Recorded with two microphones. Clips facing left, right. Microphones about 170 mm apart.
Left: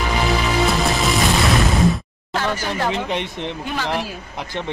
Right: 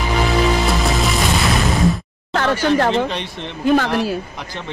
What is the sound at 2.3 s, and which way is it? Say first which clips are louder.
Speech: right 7 dB; 60° right (ahead or behind).